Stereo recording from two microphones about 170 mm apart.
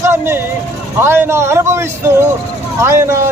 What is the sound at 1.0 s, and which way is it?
Speech, 15° right (ahead or behind).